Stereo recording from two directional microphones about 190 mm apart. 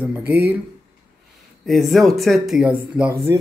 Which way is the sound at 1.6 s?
Centre (ahead or behind).